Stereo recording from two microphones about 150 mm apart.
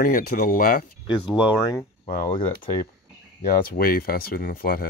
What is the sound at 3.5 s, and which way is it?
Speech, 80° left.